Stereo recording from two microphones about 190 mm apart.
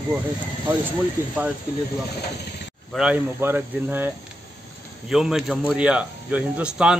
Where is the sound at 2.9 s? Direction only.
5° right (ahead or behind).